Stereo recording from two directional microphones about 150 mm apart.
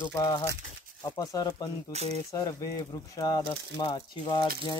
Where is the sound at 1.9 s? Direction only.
45° right (ahead or behind).